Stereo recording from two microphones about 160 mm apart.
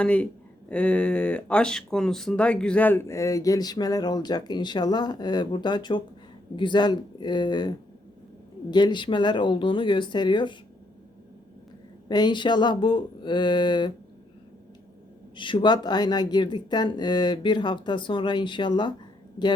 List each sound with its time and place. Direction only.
0.0 s speech: 5° left (ahead or behind); by 7.7 s 25° left (ahead or behind)
8.7 s speech: 30° left (ahead or behind)
12.0 s speech: 25° left (ahead or behind)
15.4 s speech: 30° left (ahead or behind)